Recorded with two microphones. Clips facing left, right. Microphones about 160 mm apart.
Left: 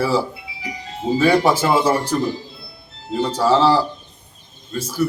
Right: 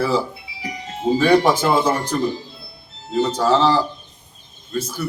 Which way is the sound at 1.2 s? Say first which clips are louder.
Even; 5° left (ahead or behind).